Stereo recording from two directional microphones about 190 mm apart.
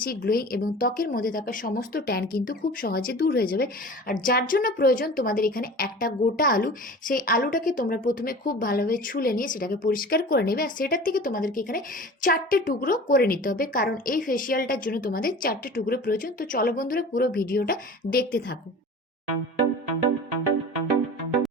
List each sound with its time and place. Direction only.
0.0 s a woman's voice: 50° left (ahead or behind)